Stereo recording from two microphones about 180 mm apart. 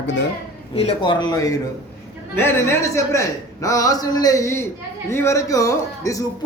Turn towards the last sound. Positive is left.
turn(degrees=20)  # may be behind; listen again after turning